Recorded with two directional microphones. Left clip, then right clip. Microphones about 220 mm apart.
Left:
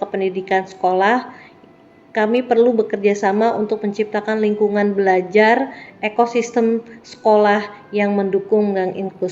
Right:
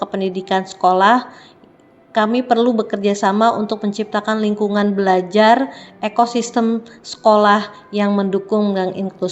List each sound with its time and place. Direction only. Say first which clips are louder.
0.0 s a woman's voice: left 1 dB; 20° right (ahead or behind)